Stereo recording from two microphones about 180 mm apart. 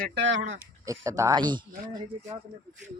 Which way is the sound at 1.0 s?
20° right (ahead or behind).